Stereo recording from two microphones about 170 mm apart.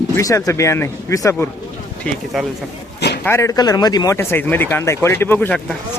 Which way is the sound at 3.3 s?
15° left (ahead or behind).